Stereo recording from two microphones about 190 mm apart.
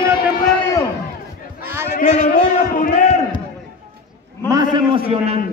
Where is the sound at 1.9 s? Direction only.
45° left (ahead or behind).